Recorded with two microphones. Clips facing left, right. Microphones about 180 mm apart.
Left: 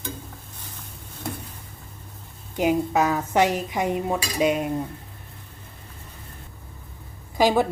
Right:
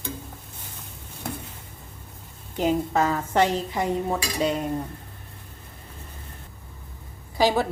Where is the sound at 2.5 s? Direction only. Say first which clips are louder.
Left 2 dB; 10° left (ahead or behind).